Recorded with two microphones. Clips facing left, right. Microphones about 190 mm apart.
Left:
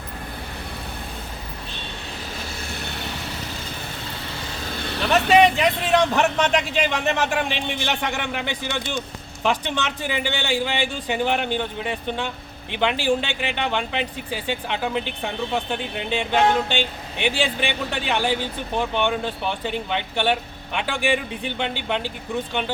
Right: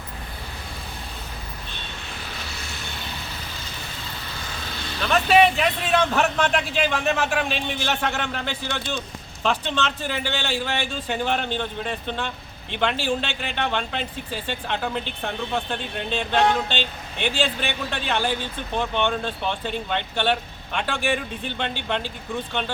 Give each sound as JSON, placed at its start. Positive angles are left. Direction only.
{"t": 2.6, "sound": "vehicle", "side_deg": 60}
{"t": 4.7, "sound": "vehicle", "side_deg": 60}
{"t": 5.9, "sound": "a man's voice", "side_deg": 15}
{"t": 6.5, "sound": "speech", "side_deg": 0}
{"t": 7.8, "sound": "a man's voice", "side_deg": 15}